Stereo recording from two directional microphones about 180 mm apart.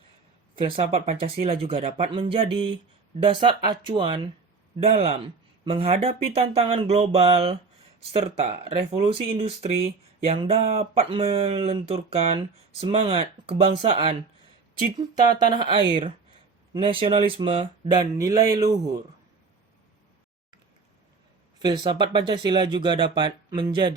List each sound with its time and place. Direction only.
0.6 s speech: 30° right (ahead or behind)
21.6 s speech: 25° right (ahead or behind)